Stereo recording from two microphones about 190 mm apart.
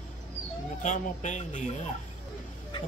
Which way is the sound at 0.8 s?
40° left (ahead or behind).